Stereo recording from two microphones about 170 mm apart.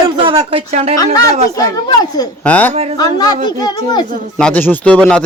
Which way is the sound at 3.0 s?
25° left (ahead or behind).